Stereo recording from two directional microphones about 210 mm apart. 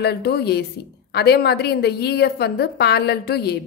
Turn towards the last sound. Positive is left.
turn(degrees=50)  # may be behind; listen again after turning